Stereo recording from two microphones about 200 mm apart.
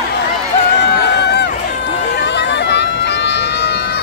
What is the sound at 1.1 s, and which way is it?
Run, 55° left (ahead or behind).